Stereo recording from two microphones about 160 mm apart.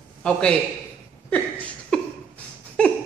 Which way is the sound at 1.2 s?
10° left (ahead or behind).